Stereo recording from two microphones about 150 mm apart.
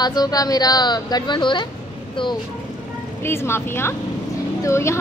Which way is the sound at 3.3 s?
15° left (ahead or behind).